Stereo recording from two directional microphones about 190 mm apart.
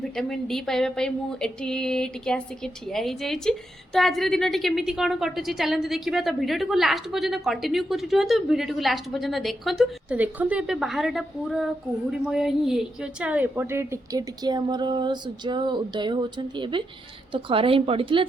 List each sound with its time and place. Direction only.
0.0 s a woman's voice: centre (ahead or behind); by 18.3 s 25° right (ahead or behind)